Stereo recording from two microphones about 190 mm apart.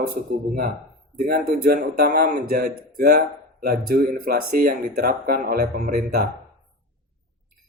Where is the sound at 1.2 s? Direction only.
50° right (ahead or behind).